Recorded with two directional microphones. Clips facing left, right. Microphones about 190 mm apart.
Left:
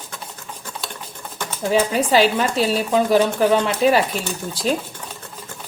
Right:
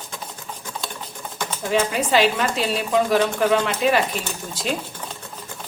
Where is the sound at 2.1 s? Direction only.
35° left (ahead or behind).